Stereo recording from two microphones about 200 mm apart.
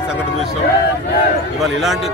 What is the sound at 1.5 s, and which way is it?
Speech, centre (ahead or behind).